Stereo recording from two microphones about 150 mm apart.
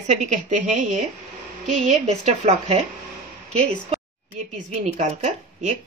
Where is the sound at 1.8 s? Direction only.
45° right (ahead or behind).